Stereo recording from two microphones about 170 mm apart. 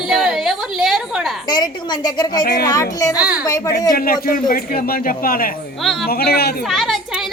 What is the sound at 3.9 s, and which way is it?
A man's voice, 60° left (ahead or behind).